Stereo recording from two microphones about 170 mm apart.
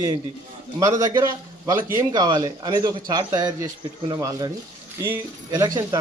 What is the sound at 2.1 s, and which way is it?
A man's voice, 25° right (ahead or behind).